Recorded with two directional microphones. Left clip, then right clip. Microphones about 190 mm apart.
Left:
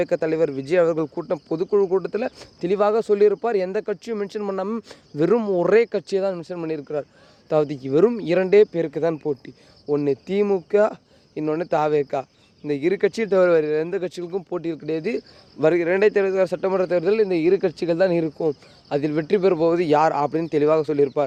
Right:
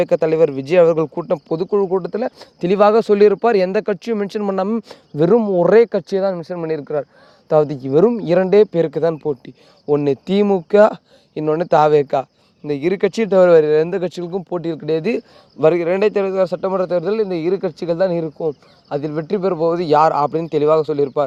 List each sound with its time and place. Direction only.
0.0 s speech: 30° right (ahead or behind)
2.6 s speech: 45° right (ahead or behind); by 9.5 s 25° right (ahead or behind)
9.9 s speech: 40° right (ahead or behind)
15.6 s speech: 25° right (ahead or behind); by 19.9 s 10° right (ahead or behind)
19.9 s speech: 20° right (ahead or behind)